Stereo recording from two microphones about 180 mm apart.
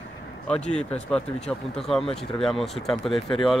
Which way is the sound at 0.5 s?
5° left (ahead or behind).